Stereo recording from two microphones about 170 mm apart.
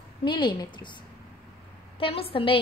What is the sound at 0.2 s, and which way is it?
Speech, 25° left (ahead or behind).